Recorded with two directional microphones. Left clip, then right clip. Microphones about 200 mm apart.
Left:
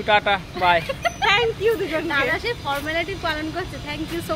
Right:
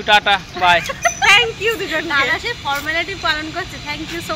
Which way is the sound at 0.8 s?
5° right (ahead or behind).